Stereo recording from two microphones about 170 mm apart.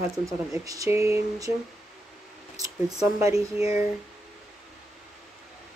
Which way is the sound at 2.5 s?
20° right (ahead or behind).